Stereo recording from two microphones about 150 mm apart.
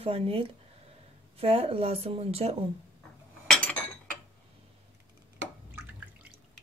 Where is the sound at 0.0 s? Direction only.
40° right (ahead or behind).